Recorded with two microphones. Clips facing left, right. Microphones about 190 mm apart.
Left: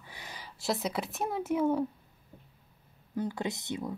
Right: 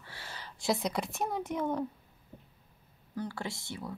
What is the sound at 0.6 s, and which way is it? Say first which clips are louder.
Speech: right 1 dB; centre (ahead or behind).